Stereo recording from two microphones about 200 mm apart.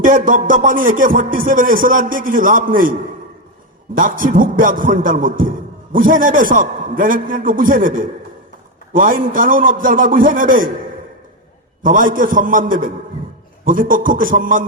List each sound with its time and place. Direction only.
0.0 s speech: 40° right (ahead or behind)
3.9 s speech: 45° right (ahead or behind)
11.8 s speech: 45° right (ahead or behind)